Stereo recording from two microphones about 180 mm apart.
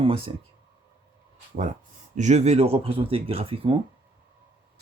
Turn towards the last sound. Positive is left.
turn(degrees=-30)  # may be behind; listen again after turning